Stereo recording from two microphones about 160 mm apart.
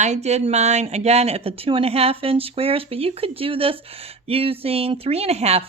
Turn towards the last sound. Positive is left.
turn(degrees=-40)  # may be behind; listen again after turning